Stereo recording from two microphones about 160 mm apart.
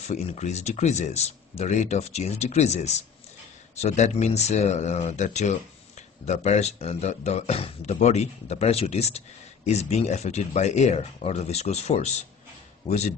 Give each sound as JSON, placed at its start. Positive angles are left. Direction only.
{"t": 0.0, "sound": "speech", "side_deg": 45}